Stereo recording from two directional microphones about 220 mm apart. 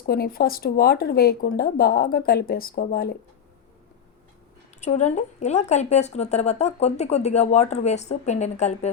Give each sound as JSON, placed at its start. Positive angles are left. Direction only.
{"t": 0.0, "sound": "speech", "side_deg": 45}
{"t": 4.8, "sound": "speech", "side_deg": 30}